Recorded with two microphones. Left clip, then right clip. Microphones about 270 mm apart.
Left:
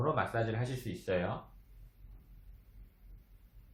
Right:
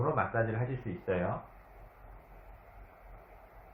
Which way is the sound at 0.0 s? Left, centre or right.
Left.